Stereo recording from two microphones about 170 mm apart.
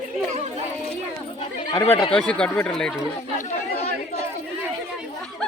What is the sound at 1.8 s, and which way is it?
Speech, 30° left (ahead or behind).